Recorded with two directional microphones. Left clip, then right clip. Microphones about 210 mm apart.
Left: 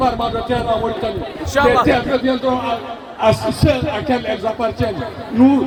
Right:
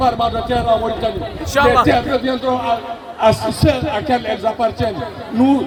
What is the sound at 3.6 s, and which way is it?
A man's voice, 30° right (ahead or behind).